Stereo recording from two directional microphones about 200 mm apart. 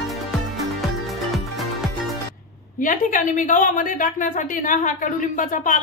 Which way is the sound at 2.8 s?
40° left (ahead or behind).